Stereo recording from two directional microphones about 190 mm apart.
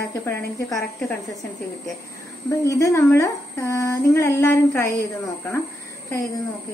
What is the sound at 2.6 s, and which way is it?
A woman's voice, 15° left (ahead or behind).